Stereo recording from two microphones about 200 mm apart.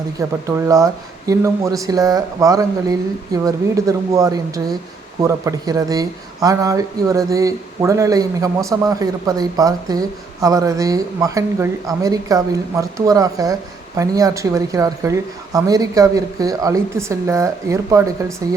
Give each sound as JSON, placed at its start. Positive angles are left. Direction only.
{"t": 0.2, "sound": "speech", "side_deg": -15}